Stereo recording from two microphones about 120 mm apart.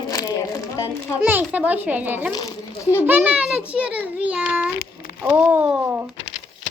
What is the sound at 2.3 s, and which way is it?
Speech, 35° left (ahead or behind).